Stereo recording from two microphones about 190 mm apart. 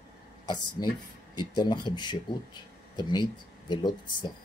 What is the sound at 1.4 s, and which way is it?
Speech, 20° left (ahead or behind).